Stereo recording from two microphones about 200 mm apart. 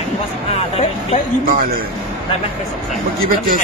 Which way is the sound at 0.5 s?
30° left (ahead or behind).